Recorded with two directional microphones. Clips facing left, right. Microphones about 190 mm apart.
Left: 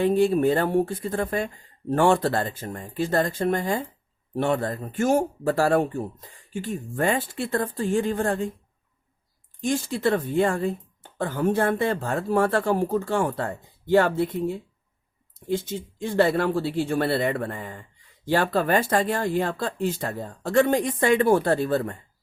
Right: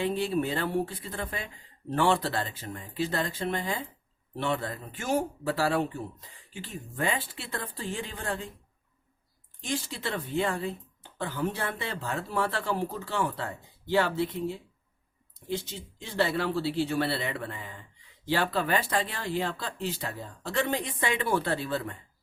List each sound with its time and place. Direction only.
0.0 s speech: 45° left (ahead or behind)
9.6 s speech: 50° left (ahead or behind)